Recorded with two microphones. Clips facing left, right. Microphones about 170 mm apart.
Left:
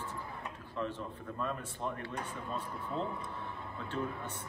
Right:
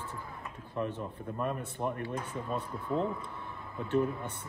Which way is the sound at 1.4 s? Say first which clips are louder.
Right 4 dB; 15° right (ahead or behind).